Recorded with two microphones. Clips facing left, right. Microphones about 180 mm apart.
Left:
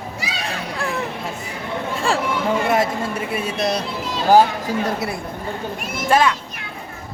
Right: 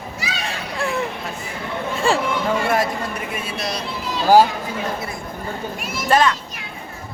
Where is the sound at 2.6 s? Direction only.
20° left (ahead or behind).